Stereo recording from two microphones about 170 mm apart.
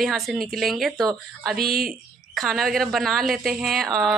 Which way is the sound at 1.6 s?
60° right (ahead or behind).